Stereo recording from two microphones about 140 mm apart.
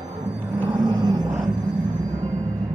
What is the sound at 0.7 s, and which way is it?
Music, 25° right (ahead or behind).